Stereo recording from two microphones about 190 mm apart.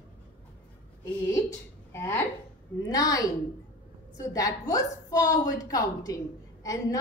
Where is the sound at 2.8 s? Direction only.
20° left (ahead or behind).